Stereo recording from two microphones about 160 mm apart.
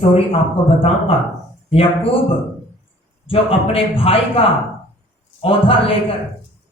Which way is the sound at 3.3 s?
35° left (ahead or behind).